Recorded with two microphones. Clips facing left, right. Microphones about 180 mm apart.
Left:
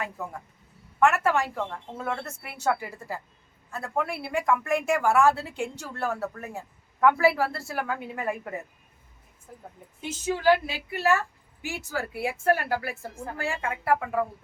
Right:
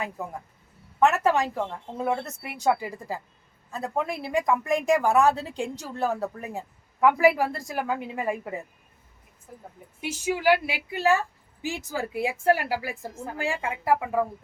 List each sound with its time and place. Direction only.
0.9 s a woman's voice: 20° right (ahead or behind)
10.0 s a woman's voice: 10° right (ahead or behind)